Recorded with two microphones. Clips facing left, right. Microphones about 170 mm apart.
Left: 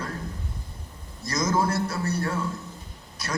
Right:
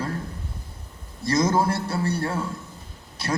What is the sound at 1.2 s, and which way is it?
A man's voice, 30° right (ahead or behind).